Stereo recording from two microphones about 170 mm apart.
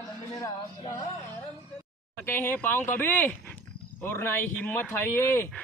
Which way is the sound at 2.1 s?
15° left (ahead or behind).